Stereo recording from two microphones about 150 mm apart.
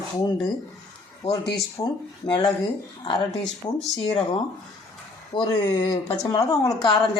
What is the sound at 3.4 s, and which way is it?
Speech, centre (ahead or behind).